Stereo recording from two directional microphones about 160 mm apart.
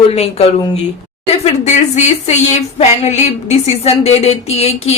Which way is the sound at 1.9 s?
45° left (ahead or behind).